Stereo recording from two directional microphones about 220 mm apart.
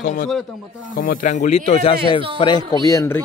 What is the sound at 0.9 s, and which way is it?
Speech, 35° left (ahead or behind).